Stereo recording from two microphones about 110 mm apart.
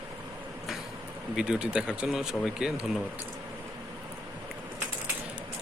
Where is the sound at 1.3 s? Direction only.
10° right (ahead or behind).